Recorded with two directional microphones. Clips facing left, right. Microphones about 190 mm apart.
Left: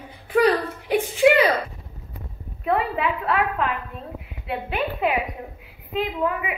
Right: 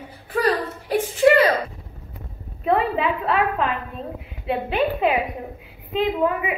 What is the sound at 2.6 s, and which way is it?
A woman's voice, 25° right (ahead or behind).